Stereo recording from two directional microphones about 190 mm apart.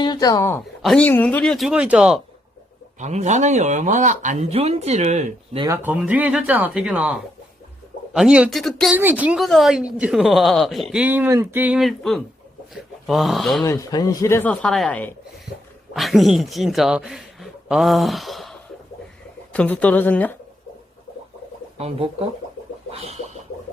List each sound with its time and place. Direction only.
0.0 s speech: 20° left (ahead or behind)
0.6 s speech: centre (ahead or behind)
3.0 s speech: 40° right (ahead or behind)
5.5 s speech: 15° right (ahead or behind); by 13.7 s centre (ahead or behind)
13.7 s speech: 15° left (ahead or behind); by 18.5 s centre (ahead or behind)
19.5 s speech: 5° left (ahead or behind)
21.8 s speech: 30° right (ahead or behind)
22.9 s a sound: 30° right (ahead or behind)